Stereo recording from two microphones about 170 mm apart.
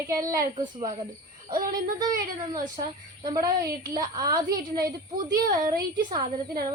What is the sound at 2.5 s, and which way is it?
Speech, 30° right (ahead or behind).